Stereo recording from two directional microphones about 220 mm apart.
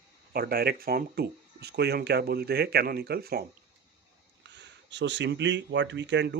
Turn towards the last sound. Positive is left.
turn(degrees=-50)  # may be behind; listen again after turning